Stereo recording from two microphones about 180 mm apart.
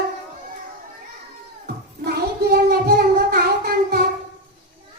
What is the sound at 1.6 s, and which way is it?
Child singing, 60° right (ahead or behind).